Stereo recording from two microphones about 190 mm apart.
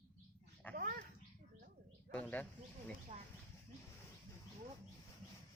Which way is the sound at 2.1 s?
5° left (ahead or behind).